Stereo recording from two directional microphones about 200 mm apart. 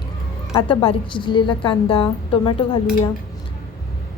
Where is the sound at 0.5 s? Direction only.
25° left (ahead or behind).